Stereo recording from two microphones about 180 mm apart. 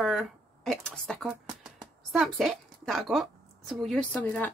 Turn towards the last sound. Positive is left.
turn(degrees=10)  # may be behind; listen again after turning